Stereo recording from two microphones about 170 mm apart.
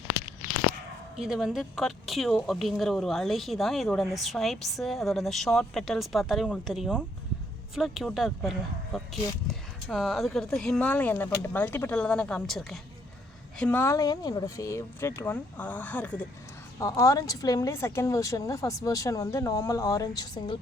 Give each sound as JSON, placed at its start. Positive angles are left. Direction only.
{"t": 1.1, "sound": "speech", "side_deg": -5}